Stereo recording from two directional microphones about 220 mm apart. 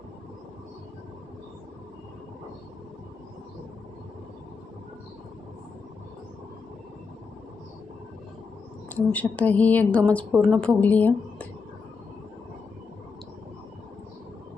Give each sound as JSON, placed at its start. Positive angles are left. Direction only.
{"t": 8.9, "sound": "a woman's voice", "side_deg": 5}